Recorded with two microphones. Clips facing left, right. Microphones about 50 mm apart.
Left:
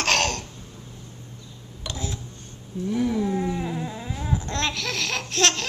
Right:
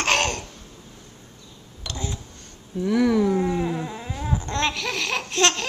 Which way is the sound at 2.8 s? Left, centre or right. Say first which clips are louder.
Right 5 dB; right.